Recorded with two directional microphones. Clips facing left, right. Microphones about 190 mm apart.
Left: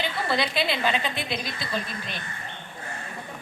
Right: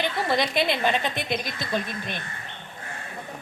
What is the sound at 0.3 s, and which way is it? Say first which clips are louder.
Speech: right 2 dB; 50° right (ahead or behind).